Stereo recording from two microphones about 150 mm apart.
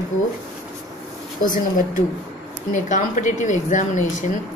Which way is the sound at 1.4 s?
60° left (ahead or behind).